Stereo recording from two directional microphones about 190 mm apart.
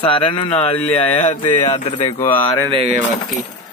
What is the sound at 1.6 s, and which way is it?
Speech, 40° left (ahead or behind).